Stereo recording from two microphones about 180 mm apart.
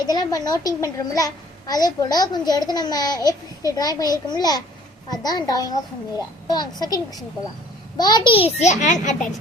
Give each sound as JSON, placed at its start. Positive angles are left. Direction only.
{"t": 0.1, "sound": "a child's voice", "side_deg": 20}
{"t": 8.5, "sound": "a child's voice", "side_deg": 40}